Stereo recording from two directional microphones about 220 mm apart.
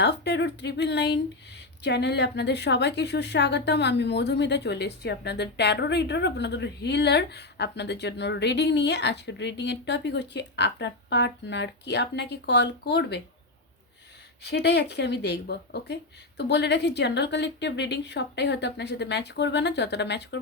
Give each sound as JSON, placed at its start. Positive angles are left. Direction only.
{"t": 0.0, "sound": "a woman's voice", "side_deg": 50}
{"t": 14.4, "sound": "a woman's voice", "side_deg": 50}